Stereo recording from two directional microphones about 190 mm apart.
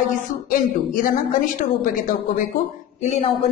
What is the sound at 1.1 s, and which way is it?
Speech, 45° left (ahead or behind).